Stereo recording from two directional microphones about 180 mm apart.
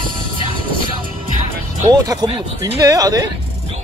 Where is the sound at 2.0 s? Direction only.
20° right (ahead or behind).